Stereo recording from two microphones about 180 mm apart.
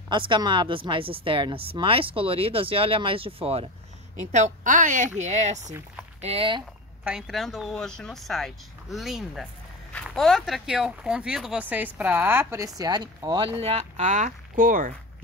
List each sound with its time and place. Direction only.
0.3 s speech: 25° right (ahead or behind)
7.1 s speech: centre (ahead or behind); by 15.0 s 50° right (ahead or behind)